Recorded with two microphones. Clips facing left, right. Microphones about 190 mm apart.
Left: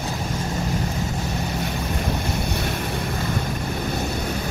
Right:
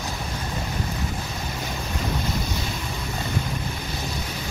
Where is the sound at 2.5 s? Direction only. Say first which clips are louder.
Left 4 dB; 60° left (ahead or behind).